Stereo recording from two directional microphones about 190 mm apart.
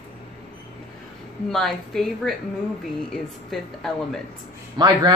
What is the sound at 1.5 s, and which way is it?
A woman's voice, centre (ahead or behind).